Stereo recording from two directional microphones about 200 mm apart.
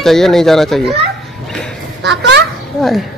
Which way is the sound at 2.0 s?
60° right (ahead or behind).